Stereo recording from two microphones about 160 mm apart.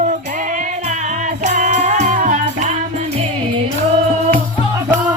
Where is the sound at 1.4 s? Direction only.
50° right (ahead or behind).